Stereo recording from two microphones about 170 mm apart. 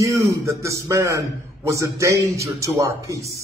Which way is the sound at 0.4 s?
15° right (ahead or behind).